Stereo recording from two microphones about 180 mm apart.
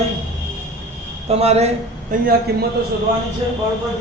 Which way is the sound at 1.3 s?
35° right (ahead or behind).